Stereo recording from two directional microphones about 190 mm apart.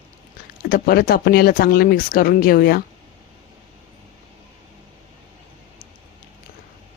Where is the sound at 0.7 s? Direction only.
50° left (ahead or behind).